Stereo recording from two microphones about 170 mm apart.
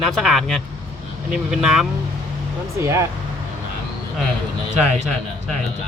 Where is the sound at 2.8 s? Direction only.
15° right (ahead or behind).